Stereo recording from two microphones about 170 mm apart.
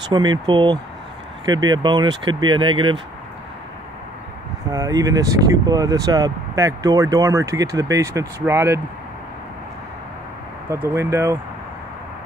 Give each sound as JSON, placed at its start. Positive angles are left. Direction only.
{"t": 0.1, "sound": "speech", "side_deg": -25}
{"t": 4.6, "sound": "speech", "side_deg": -20}
{"t": 10.7, "sound": "speech", "side_deg": -15}